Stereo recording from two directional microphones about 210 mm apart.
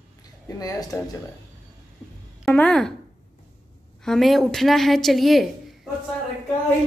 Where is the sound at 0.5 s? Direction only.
15° left (ahead or behind).